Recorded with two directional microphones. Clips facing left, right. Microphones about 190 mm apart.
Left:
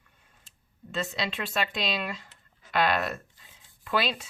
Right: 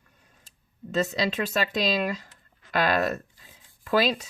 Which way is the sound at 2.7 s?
40° right (ahead or behind).